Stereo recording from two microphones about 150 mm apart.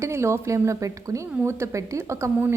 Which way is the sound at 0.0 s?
20° right (ahead or behind).